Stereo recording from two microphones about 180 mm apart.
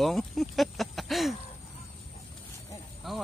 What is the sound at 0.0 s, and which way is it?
Speech, centre (ahead or behind).